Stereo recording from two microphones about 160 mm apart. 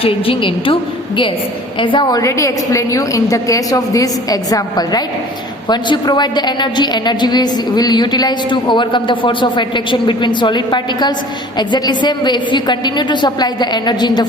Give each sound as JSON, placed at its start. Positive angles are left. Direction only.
{"t": 0.0, "sound": "a woman's voice", "side_deg": 35}